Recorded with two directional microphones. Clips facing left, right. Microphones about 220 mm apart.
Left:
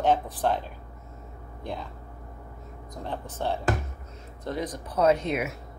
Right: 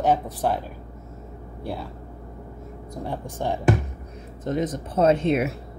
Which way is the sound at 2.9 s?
10° right (ahead or behind).